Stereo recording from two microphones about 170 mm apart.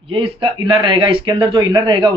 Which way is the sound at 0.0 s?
35° right (ahead or behind).